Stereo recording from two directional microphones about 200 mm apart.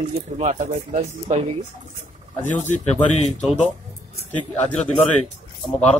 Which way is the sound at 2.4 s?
35° left (ahead or behind).